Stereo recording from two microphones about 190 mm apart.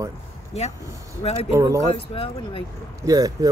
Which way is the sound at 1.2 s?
30° left (ahead or behind).